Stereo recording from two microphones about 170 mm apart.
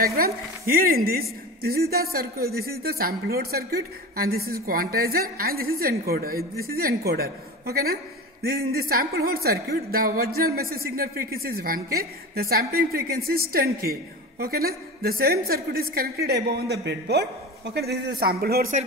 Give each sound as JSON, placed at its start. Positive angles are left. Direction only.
{"t": 0.0, "sound": "a woman's voice", "side_deg": -60}
{"t": 16.8, "sound": "a man's voice", "side_deg": -85}